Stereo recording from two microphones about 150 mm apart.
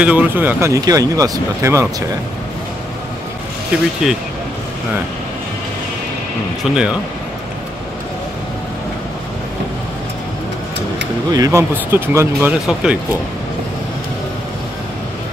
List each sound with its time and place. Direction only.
0.0 s speech: 10° right (ahead or behind)
3.7 s speech: 5° right (ahead or behind)
6.6 s speech: 5° right (ahead or behind)
11.3 s speech: 20° right (ahead or behind)